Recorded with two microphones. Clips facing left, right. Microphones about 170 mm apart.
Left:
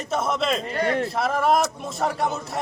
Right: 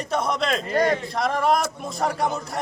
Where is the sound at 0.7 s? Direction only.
40° right (ahead or behind).